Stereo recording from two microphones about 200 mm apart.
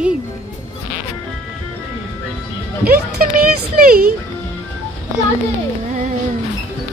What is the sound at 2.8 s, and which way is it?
Speech, 50° right (ahead or behind).